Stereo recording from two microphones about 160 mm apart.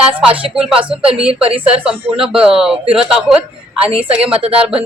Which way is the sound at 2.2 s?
5° right (ahead or behind).